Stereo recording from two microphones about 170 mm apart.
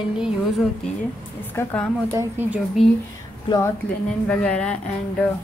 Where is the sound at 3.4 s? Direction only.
15° left (ahead or behind).